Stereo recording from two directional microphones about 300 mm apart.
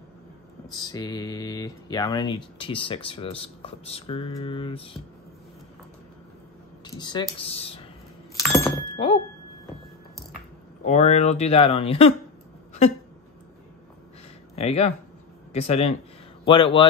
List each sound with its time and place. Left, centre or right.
0.7 s speech: centre
6.8 s speech: centre
8.4 s thunk: centre
10.9 s speech: left
14.5 s speech: left